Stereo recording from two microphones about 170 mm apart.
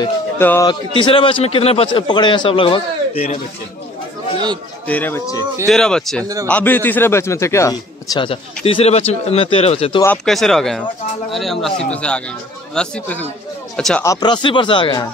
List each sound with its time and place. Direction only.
0.4 s speech: 15° left (ahead or behind)
0.7 s a man's voice: 30° left (ahead or behind)
4.8 s speech: 10° left (ahead or behind); by 9.9 s 35° left (ahead or behind)
10.1 s speech: 5° left (ahead or behind)
14.0 s speech: 25° left (ahead or behind)